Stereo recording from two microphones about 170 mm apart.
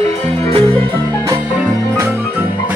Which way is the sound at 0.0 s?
40° right (ahead or behind).